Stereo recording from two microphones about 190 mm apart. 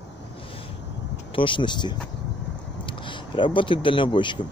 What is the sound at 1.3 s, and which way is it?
Speech, 25° left (ahead or behind).